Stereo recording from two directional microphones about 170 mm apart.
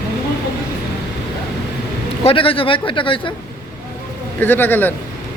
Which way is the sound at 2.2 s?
35° left (ahead or behind).